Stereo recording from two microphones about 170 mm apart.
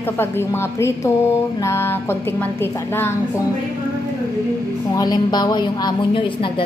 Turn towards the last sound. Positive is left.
turn(degrees=25)  # may be behind; listen again after turning